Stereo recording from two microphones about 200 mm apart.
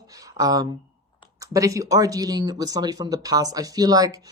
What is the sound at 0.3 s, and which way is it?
Speech, 20° right (ahead or behind).